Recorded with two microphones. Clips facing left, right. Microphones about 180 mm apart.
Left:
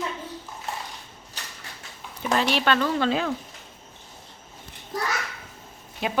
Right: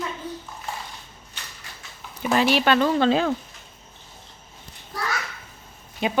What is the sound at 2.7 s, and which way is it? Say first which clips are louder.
Speech: right 4 dB; 25° right (ahead or behind).